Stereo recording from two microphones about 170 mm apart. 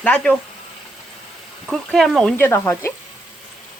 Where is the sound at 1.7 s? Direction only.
Centre (ahead or behind).